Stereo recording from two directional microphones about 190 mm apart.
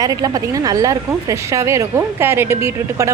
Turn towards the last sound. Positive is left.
turn(degrees=-15)  # may be behind; listen again after turning